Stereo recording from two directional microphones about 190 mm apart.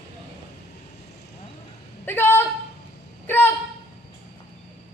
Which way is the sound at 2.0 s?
10° left (ahead or behind).